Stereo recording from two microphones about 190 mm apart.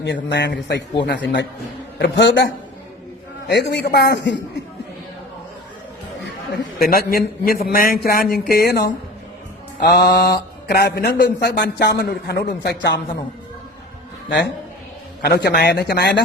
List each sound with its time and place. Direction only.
0.0 s a man's voice: 65° left (ahead or behind)
6.8 s a man's voice: 50° left (ahead or behind)
14.3 s a man's voice: 70° left (ahead or behind)